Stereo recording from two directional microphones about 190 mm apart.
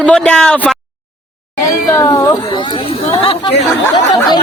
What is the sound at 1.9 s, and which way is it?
Speech, 15° left (ahead or behind).